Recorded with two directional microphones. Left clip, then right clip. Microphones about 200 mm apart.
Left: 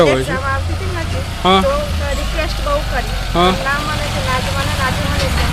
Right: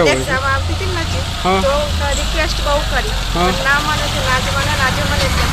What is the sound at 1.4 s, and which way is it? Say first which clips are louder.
Speech: left 4 dB; 70° left (ahead or behind).